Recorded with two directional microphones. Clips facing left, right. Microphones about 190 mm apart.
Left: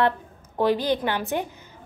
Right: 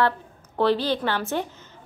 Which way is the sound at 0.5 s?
15° left (ahead or behind).